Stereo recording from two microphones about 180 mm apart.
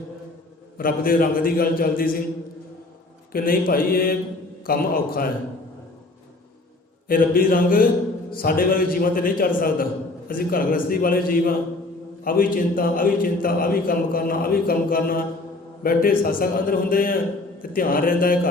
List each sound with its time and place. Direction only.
0.8 s a man's voice: 55° left (ahead or behind)
3.3 s a man's voice: 50° left (ahead or behind)
7.1 s a man's voice: 50° left (ahead or behind)